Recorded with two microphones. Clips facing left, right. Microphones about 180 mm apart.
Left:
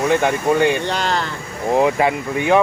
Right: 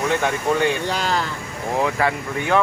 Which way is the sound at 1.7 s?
20° left (ahead or behind).